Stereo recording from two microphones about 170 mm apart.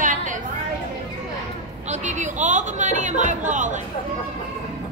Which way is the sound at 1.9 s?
45° right (ahead or behind).